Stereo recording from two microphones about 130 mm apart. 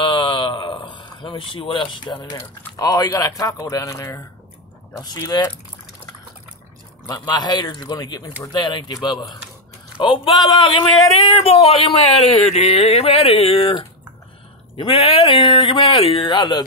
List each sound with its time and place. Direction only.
0.0 s a sound: 40° left (ahead or behind)
2.8 s a man's voice: 30° left (ahead or behind)
7.1 s speech: 30° left (ahead or behind)